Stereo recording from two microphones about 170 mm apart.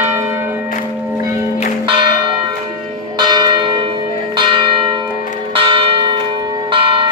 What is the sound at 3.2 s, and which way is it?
Church bell, 25° right (ahead or behind).